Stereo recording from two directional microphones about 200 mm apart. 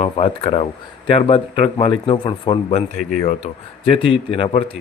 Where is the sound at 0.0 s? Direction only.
35° left (ahead or behind).